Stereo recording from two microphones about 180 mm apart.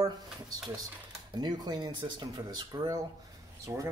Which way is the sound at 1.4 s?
25° right (ahead or behind).